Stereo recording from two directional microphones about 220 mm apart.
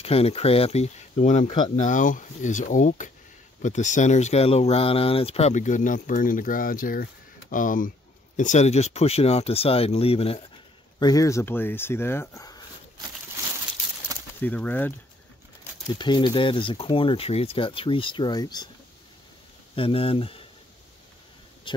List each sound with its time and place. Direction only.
0.0 s speech: 25° left (ahead or behind)
11.0 s speech: 15° left (ahead or behind)
14.4 s speech: 10° left (ahead or behind)
15.9 s speech: 20° left (ahead or behind)
19.7 s speech: 25° left (ahead or behind)
21.7 s speech: 20° left (ahead or behind)